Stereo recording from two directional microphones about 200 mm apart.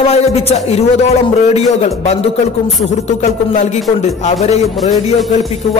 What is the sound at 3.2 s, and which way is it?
Music, 35° left (ahead or behind).